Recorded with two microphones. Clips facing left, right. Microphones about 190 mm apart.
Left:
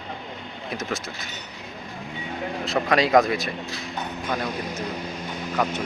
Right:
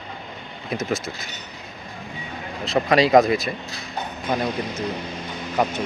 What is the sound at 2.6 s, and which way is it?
Speech, centre (ahead or behind).